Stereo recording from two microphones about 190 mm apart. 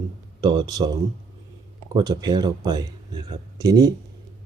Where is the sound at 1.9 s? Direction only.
20° right (ahead or behind).